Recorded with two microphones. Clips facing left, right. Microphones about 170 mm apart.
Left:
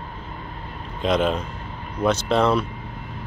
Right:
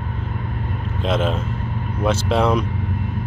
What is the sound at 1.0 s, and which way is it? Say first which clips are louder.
Speech: left 1 dB; centre (ahead or behind).